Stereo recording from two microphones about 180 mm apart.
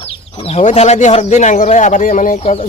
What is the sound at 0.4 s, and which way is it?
Speech, 40° left (ahead or behind).